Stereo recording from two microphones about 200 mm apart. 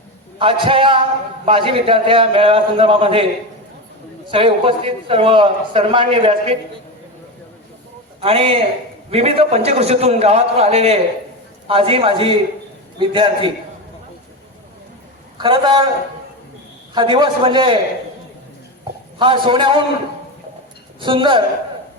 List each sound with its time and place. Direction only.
0.3 s a man's voice: 25° right (ahead or behind)
4.3 s a man's voice: 25° right (ahead or behind)
8.2 s a man's voice: 30° right (ahead or behind)
15.4 s a man's voice: 25° right (ahead or behind)
16.9 s a man's voice: 25° right (ahead or behind)
19.2 s a man's voice: 25° right (ahead or behind)
21.0 s a man's voice: 25° right (ahead or behind)